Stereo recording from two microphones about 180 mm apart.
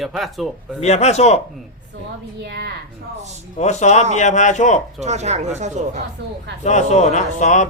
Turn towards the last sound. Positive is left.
turn(degrees=40)  # may be behind; listen again after turning